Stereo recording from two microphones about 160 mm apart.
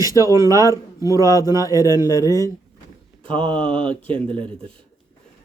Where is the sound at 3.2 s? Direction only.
35° right (ahead or behind).